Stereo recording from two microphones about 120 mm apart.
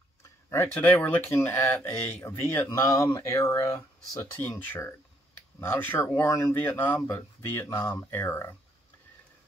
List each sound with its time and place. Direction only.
0.5 s speech: 20° left (ahead or behind)